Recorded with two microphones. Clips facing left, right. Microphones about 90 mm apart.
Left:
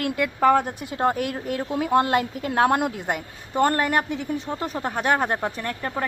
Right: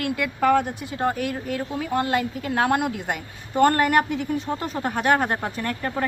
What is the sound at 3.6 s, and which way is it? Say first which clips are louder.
Speech: right 3 dB; 20° left (ahead or behind).